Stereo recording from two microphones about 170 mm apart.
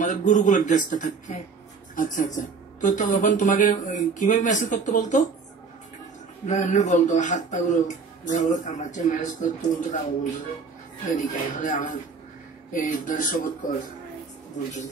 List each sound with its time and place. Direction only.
0.0 s speech: 45° left (ahead or behind)
6.4 s speech: 45° left (ahead or behind)
11.1 s speech: 50° left (ahead or behind)